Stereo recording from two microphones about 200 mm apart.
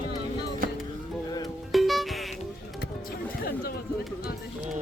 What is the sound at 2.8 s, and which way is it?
Speech, 50° left (ahead or behind).